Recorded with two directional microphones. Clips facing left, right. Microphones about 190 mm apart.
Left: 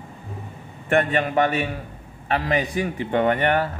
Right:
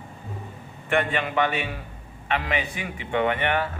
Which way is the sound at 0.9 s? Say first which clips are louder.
Left 4 dB; 45° left (ahead or behind).